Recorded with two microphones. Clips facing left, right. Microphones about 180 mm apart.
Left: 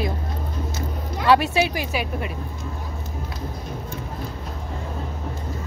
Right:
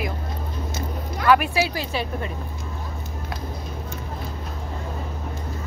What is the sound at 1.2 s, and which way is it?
Speech, 25° left (ahead or behind).